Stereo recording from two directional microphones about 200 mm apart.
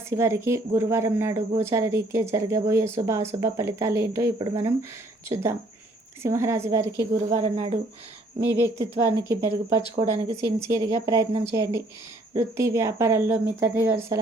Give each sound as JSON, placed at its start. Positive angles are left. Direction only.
{"t": 0.1, "sound": "speech", "side_deg": -15}
{"t": 7.2, "sound": "speech", "side_deg": -35}
{"t": 8.5, "sound": "speech", "side_deg": -15}
{"t": 9.9, "sound": "speech", "side_deg": -30}
{"t": 10.4, "sound": "speech", "side_deg": -15}